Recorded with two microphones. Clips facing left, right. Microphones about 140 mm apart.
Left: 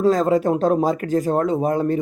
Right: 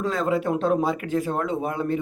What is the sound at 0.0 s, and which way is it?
Speech, 40° left (ahead or behind).